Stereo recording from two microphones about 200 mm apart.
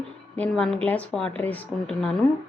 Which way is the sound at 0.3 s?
5° left (ahead or behind).